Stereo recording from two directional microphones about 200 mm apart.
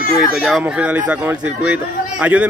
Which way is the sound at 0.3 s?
Centre (ahead or behind).